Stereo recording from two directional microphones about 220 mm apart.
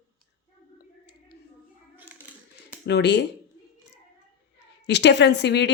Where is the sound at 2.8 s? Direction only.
50° left (ahead or behind).